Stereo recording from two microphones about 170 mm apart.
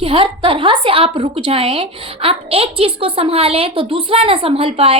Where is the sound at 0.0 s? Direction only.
30° right (ahead or behind).